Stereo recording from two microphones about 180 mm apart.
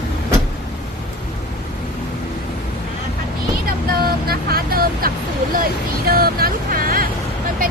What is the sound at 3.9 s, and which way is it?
Speech, 55° right (ahead or behind).